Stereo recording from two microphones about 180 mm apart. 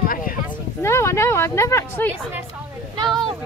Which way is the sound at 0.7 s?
15° left (ahead or behind).